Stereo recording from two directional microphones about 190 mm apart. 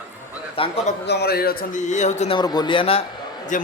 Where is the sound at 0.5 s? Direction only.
30° left (ahead or behind).